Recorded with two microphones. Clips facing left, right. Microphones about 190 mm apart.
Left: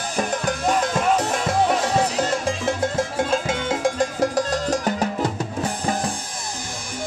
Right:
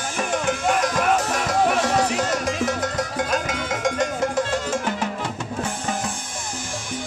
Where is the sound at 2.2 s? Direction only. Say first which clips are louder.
Even; 30° left (ahead or behind).